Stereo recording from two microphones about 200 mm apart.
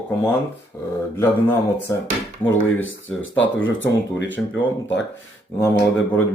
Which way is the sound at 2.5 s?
75° left (ahead or behind).